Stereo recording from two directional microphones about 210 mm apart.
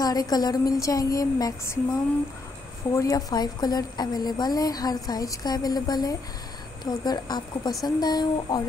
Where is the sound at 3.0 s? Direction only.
15° left (ahead or behind).